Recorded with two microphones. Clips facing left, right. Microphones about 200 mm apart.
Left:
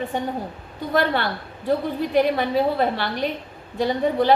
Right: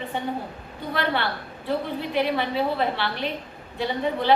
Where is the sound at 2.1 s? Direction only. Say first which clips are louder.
Left 5 dB; 40° left (ahead or behind).